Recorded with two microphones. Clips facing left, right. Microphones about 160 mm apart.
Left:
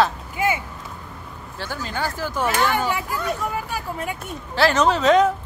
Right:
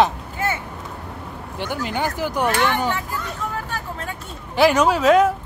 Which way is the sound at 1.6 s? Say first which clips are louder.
Right 3 dB; 15° right (ahead or behind).